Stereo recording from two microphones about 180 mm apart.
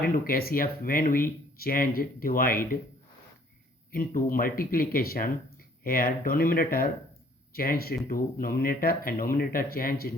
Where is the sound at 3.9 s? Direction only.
50° left (ahead or behind).